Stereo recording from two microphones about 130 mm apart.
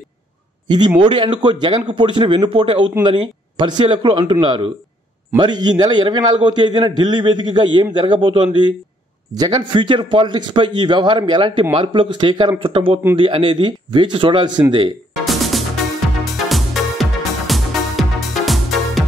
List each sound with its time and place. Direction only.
0.7 s a man's voice: 35° right (ahead or behind)
15.2 s music: centre (ahead or behind)